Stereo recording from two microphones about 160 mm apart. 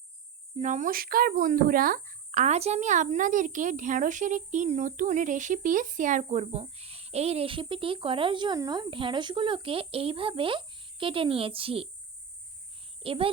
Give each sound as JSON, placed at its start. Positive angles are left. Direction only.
{"t": 0.5, "sound": "speech", "side_deg": -50}
{"t": 13.0, "sound": "a child's voice", "side_deg": -35}